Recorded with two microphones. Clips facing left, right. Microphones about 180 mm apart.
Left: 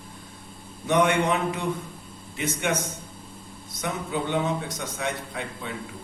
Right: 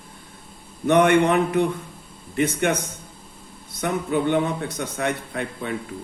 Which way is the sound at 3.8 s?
60° right (ahead or behind).